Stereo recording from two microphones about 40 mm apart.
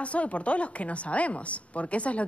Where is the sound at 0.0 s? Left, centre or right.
Left.